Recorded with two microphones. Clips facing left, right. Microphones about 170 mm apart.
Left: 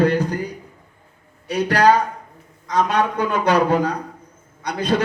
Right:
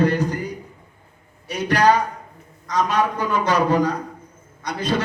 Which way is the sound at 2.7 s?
60° left (ahead or behind).